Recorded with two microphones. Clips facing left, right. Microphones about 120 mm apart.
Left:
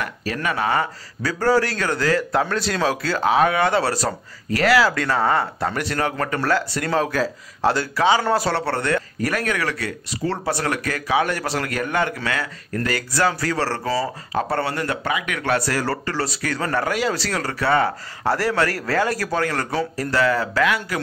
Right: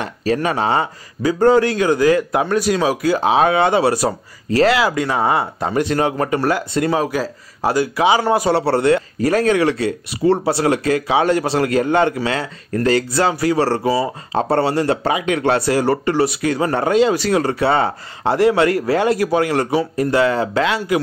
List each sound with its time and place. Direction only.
0.0 s speech: 25° right (ahead or behind)
7.0 s speech: 10° right (ahead or behind)
8.5 s speech: 25° right (ahead or behind)